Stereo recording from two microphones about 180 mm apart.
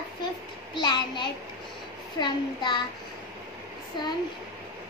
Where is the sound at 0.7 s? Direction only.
25° left (ahead or behind).